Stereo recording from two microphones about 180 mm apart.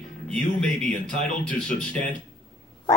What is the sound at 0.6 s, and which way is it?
A woman's voice, 5° left (ahead or behind).